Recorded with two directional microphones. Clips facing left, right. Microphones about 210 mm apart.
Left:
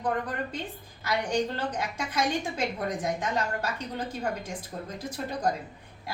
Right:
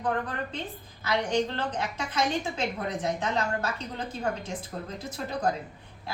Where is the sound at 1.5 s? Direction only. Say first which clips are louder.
Even; 10° left (ahead or behind).